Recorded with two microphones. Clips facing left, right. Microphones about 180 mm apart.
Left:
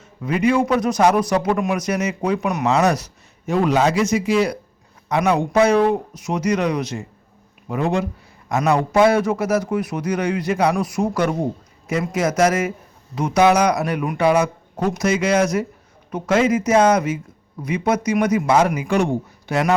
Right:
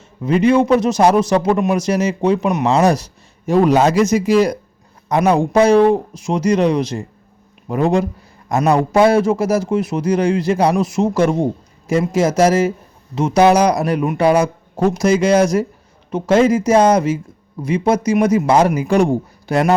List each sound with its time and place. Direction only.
0.2 s a man's voice: 30° right (ahead or behind)